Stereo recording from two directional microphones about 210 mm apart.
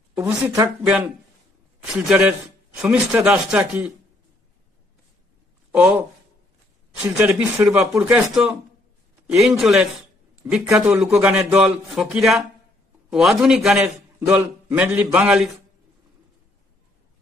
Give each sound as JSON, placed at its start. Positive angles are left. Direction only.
{"t": 0.5, "sound": "speech", "side_deg": -15}
{"t": 2.0, "sound": "a man's voice", "side_deg": -5}
{"t": 5.7, "sound": "a man's voice", "side_deg": -5}